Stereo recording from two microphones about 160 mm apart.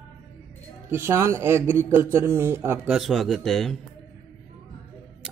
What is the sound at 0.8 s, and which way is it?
Speech, 15° right (ahead or behind).